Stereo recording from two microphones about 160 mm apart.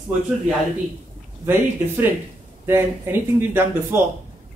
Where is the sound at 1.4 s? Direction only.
15° right (ahead or behind).